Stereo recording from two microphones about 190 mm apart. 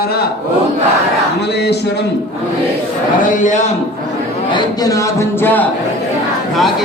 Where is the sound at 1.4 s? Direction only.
60° left (ahead or behind).